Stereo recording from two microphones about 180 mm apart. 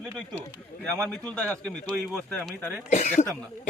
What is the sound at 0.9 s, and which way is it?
Speech, 5° left (ahead or behind).